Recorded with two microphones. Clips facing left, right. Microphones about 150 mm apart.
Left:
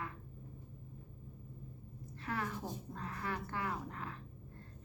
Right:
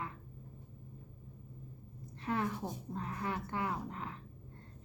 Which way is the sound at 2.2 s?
20° right (ahead or behind).